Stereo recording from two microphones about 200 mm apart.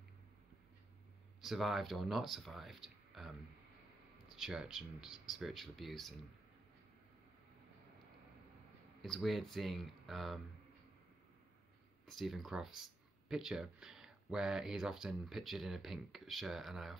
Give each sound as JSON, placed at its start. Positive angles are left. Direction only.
{"t": 1.4, "sound": "speech", "side_deg": 0}
{"t": 9.0, "sound": "speech", "side_deg": 0}
{"t": 12.1, "sound": "speech", "side_deg": 0}